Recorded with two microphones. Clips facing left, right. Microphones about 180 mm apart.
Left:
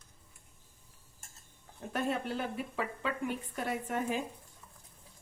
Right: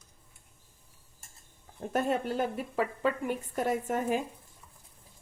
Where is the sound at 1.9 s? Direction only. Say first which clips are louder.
Right 5 dB; 45° right (ahead or behind).